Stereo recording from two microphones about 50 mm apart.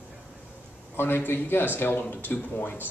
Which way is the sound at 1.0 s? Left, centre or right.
Left.